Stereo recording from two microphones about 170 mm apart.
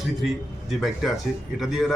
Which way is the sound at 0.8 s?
Centre (ahead or behind).